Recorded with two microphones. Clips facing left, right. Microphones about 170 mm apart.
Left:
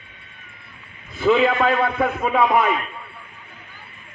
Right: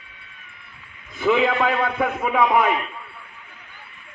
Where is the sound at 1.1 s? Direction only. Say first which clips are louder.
Left 2 dB; 15° right (ahead or behind).